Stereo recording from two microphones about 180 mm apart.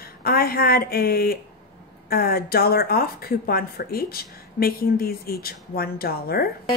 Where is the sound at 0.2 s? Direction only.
55° left (ahead or behind).